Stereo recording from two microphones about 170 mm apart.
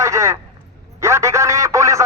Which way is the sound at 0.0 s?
15° right (ahead or behind).